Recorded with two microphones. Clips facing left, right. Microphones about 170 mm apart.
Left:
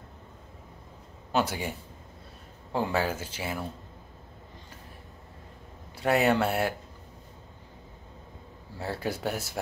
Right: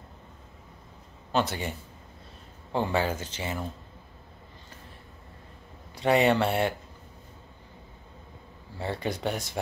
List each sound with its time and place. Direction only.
1.3 s a man's voice: 10° left (ahead or behind)
5.9 s speech: 5° left (ahead or behind)
8.7 s speech: 5° left (ahead or behind)